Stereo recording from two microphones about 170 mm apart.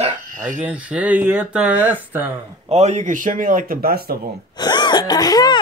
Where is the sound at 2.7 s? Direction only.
40° right (ahead or behind); by 4.2 s 60° right (ahead or behind).